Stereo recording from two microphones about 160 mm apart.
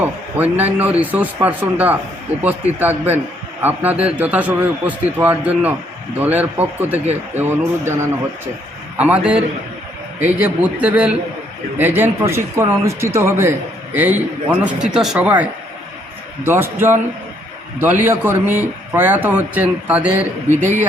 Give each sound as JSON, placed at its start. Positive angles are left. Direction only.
{"t": 0.0, "sound": "a man's voice", "side_deg": -10}
{"t": 17.7, "sound": "a man's voice", "side_deg": -10}
{"t": 20.6, "sound": "speech", "side_deg": -50}